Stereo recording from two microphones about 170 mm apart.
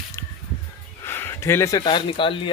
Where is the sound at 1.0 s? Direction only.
15° left (ahead or behind); by 2.5 s 30° left (ahead or behind).